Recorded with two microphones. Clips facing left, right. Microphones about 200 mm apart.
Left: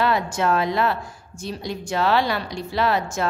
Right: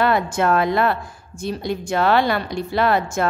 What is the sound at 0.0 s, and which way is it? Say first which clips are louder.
A woman's voice: right 3 dB; 55° right (ahead or behind).